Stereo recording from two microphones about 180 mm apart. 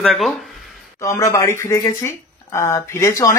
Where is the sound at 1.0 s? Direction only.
15° left (ahead or behind).